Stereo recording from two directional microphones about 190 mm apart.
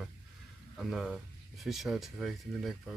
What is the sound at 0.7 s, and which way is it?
Speech, centre (ahead or behind).